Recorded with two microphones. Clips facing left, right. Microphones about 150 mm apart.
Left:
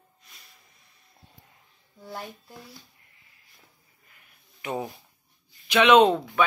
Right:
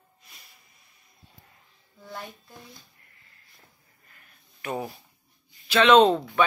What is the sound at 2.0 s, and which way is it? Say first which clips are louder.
Speech: left 2 dB; 5° left (ahead or behind).